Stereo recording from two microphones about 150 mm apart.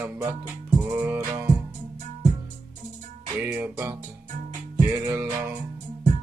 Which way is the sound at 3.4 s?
15° right (ahead or behind).